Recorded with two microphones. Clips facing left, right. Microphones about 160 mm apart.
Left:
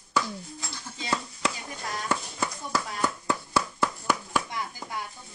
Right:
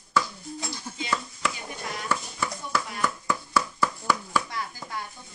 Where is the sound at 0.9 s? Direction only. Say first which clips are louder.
Left 1 dB; 35° left (ahead or behind).